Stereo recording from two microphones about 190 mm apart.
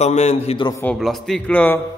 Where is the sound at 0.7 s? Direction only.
15° left (ahead or behind).